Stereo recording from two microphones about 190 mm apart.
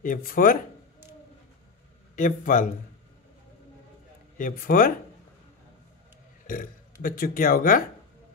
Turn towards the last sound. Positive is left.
turn(degrees=50)  # may be behind; listen again after turning